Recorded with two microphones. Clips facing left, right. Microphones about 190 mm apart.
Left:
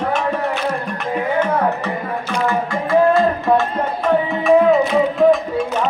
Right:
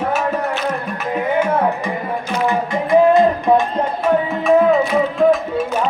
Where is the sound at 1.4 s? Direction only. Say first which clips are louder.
Right 1 dB; 10° right (ahead or behind).